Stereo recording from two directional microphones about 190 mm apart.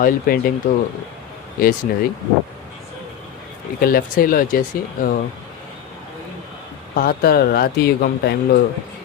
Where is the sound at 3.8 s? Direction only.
50° left (ahead or behind).